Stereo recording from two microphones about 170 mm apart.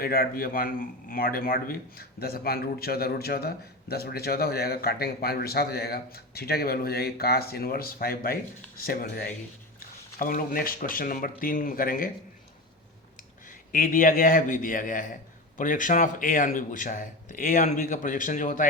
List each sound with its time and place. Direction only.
0.0 s a man's voice: 60° left (ahead or behind)
13.7 s speech: 55° left (ahead or behind)